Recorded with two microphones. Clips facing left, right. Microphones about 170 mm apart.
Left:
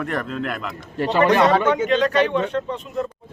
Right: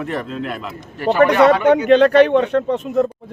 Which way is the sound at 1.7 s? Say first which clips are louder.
Right 7 dB; 55° right (ahead or behind).